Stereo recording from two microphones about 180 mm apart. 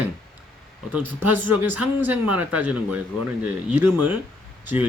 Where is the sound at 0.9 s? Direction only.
10° right (ahead or behind).